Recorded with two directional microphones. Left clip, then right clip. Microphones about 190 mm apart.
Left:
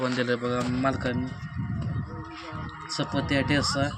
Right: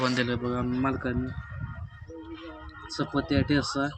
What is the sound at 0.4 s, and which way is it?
Speech, 45° left (ahead or behind).